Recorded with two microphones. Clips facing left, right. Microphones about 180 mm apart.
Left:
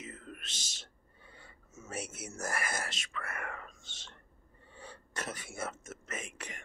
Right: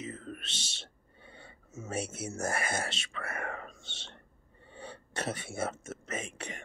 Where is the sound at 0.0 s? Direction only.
30° right (ahead or behind).